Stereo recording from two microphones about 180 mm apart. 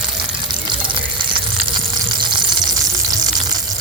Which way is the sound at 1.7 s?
25° right (ahead or behind).